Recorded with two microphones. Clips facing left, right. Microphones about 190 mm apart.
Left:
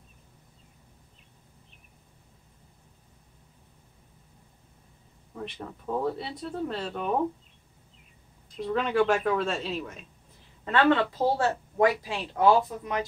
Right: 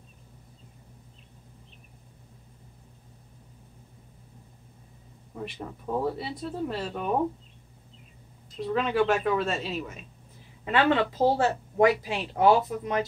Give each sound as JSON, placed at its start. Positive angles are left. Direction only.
{"t": 5.3, "sound": "speech", "side_deg": -5}
{"t": 8.5, "sound": "speech", "side_deg": 0}
{"t": 10.6, "sound": "a woman's voice", "side_deg": -15}